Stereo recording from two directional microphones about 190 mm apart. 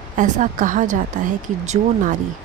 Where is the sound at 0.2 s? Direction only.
45° right (ahead or behind).